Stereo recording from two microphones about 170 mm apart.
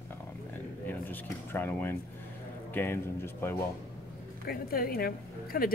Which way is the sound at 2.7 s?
15° left (ahead or behind).